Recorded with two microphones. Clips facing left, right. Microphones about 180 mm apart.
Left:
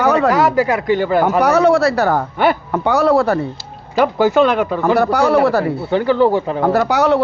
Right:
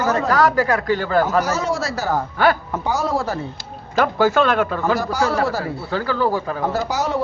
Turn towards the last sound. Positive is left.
turn(degrees=65)  # may be behind; listen again after turning